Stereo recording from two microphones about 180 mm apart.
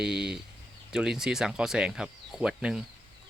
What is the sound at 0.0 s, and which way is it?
Speech, 5° right (ahead or behind).